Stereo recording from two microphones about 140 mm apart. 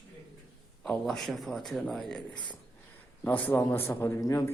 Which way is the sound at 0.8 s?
Centre (ahead or behind).